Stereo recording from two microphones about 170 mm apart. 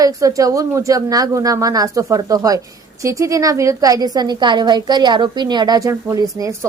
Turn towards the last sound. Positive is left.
turn(degrees=-20)  # may be behind; listen again after turning